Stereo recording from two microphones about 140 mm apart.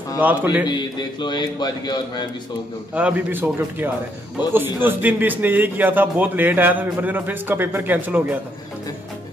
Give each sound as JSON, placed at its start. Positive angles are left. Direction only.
{"t": 0.2, "sound": "a man's voice", "side_deg": -15}
{"t": 0.7, "sound": "speech", "side_deg": 30}
{"t": 2.9, "sound": "a man's voice", "side_deg": -10}